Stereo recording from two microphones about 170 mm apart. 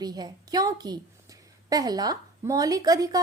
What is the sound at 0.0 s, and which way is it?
A woman's voice, 25° right (ahead or behind).